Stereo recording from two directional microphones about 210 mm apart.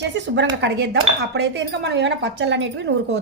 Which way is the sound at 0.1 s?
60° right (ahead or behind).